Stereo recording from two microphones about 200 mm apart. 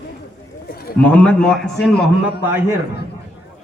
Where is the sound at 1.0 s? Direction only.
5° left (ahead or behind).